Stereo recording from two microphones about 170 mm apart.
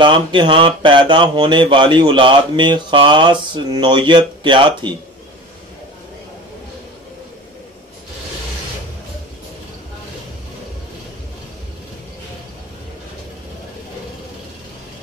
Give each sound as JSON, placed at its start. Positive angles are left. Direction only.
{"t": 0.0, "sound": "speech", "side_deg": -30}